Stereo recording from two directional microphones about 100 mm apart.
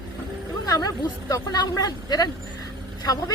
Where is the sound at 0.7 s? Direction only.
40° left (ahead or behind).